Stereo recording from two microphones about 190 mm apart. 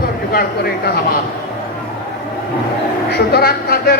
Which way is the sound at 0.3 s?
55° left (ahead or behind).